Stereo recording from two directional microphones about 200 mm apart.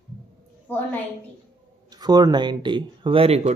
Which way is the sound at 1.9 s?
20° right (ahead or behind).